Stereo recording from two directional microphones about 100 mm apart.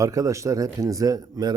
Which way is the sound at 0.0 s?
35° right (ahead or behind).